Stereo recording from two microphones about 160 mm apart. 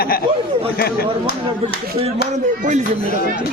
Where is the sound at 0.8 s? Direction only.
75° left (ahead or behind).